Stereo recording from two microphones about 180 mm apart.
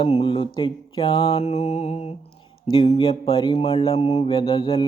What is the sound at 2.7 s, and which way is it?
Mantra, 30° left (ahead or behind).